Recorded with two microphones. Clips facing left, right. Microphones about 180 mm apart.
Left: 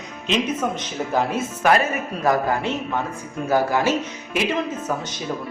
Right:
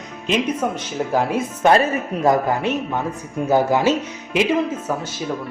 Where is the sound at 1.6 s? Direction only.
25° right (ahead or behind).